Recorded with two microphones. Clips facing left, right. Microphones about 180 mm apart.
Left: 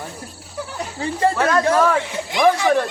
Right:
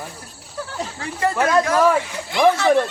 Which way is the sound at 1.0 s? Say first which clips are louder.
Left 4 dB; 30° left (ahead or behind).